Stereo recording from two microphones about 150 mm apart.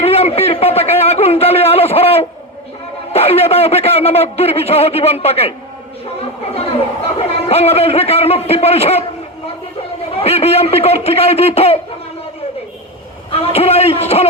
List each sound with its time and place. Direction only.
0.0 s a sound: 40° left (ahead or behind)
3.1 s a man's voice: 40° left (ahead or behind)
7.2 s a man's voice: 40° left (ahead or behind)
10.1 s a man's voice: 40° left (ahead or behind)
13.3 s a man's voice: 40° left (ahead or behind)